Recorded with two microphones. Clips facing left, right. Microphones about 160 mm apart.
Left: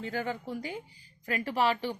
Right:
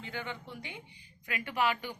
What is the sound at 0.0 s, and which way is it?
Speech, 40° left (ahead or behind).